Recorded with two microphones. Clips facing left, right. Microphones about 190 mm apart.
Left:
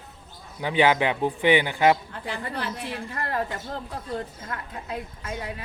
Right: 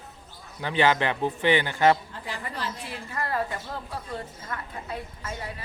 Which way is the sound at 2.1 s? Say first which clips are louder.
Left 4 dB; 60° left (ahead or behind).